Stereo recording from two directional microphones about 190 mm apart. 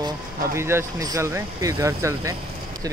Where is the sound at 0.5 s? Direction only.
15° right (ahead or behind).